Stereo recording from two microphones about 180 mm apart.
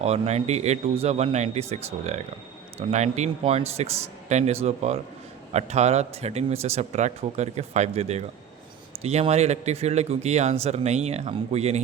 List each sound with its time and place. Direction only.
0.0 s speech: 35° right (ahead or behind)